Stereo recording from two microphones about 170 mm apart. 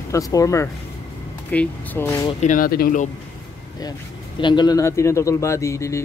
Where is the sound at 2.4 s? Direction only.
50° left (ahead or behind).